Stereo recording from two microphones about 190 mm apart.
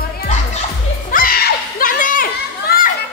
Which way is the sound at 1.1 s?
50° left (ahead or behind).